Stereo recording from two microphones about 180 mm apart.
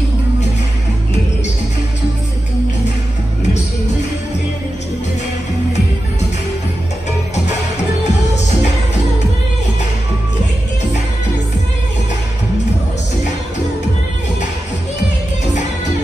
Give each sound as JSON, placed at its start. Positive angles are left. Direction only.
{"t": 8.0, "sound": "music", "side_deg": 40}